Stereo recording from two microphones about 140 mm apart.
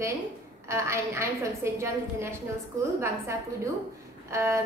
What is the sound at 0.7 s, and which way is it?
A woman's voice, 20° right (ahead or behind).